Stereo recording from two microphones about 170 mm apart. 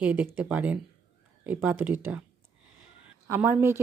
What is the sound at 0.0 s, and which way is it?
Speech, 10° right (ahead or behind).